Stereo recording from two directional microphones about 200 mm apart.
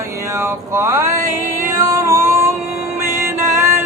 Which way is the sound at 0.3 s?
15° right (ahead or behind).